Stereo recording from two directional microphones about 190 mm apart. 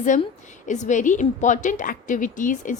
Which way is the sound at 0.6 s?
40° left (ahead or behind).